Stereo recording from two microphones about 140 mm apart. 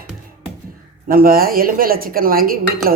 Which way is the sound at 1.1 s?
90° right.